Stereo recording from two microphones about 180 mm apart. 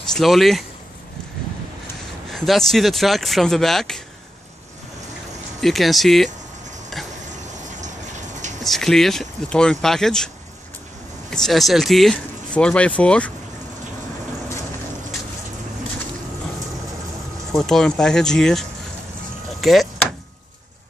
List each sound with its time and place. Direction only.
0.1 s speech: centre (ahead or behind)
2.3 s speech: centre (ahead or behind)
5.6 s speech: centre (ahead or behind)
7.4 s a sound: 40° right (ahead or behind)
8.6 s speech: centre (ahead or behind)
17.6 s speech: 5° left (ahead or behind)